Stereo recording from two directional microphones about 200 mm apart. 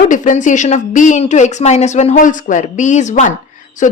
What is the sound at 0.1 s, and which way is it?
A woman's voice, 40° left (ahead or behind).